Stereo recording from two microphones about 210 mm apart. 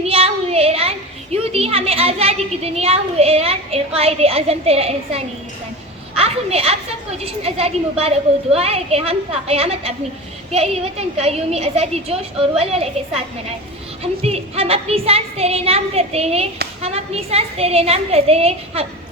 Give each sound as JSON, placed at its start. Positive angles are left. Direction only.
{"t": 0.0, "sound": "a child's voice", "side_deg": -30}